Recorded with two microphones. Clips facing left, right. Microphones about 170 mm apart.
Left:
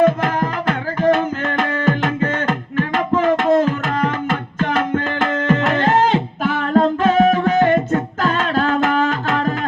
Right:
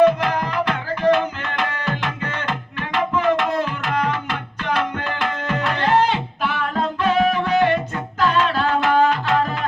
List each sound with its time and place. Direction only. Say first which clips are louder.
0.0 s music: even; 45° left (ahead or behind)